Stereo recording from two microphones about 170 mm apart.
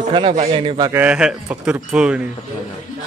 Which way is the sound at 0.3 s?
35° right (ahead or behind).